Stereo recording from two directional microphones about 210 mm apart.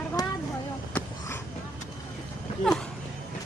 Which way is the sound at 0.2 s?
15° left (ahead or behind).